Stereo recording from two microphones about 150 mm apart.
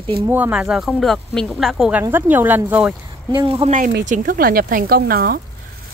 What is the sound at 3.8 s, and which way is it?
Speech, 65° right (ahead or behind).